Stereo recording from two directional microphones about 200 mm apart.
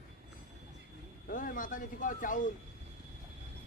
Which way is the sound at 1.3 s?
45° left (ahead or behind).